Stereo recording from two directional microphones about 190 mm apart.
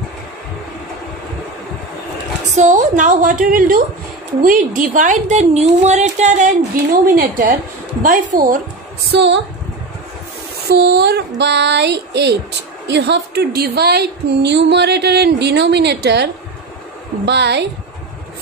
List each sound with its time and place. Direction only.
2.5 s a woman's voice: 40° right (ahead or behind)
9.1 s speech: 70° right (ahead or behind)
10.7 s a woman's voice: 60° right (ahead or behind)
17.3 s a woman's voice: 65° right (ahead or behind)